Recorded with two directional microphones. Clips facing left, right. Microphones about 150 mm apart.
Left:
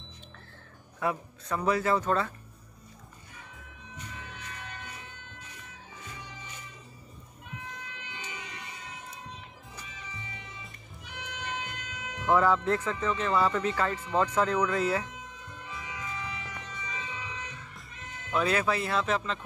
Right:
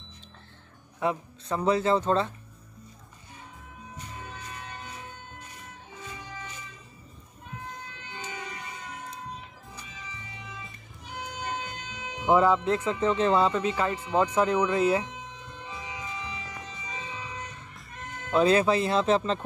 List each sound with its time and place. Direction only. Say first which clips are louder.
0.9 s a man's voice: right 2 dB; 25° right (ahead or behind)
8.0 s emergency vehicle: right 4 dB; 40° right (ahead or behind)
11.1 s speech: right 4 dB; 40° right (ahead or behind); by 15.0 s 20° right (ahead or behind)
15.6 s music: right 1 dB; 25° right (ahead or behind)
16.8 s emergency vehicle: right 1 dB; 35° right (ahead or behind)
17.9 s music: right 7 dB; 55° right (ahead or behind)
18.3 s a man's voice: right 6 dB; 25° right (ahead or behind)